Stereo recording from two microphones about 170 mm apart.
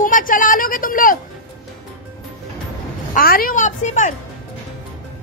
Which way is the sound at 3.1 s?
60° left (ahead or behind).